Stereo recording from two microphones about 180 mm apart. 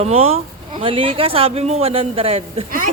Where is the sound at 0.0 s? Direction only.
35° right (ahead or behind).